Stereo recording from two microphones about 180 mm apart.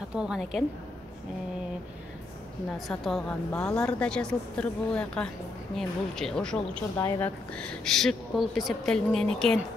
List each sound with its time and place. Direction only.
0.1 s a woman's voice: 5° right (ahead or behind)
2.9 s a woman's voice: 5° left (ahead or behind)
7.0 s a woman's voice: 15° left (ahead or behind)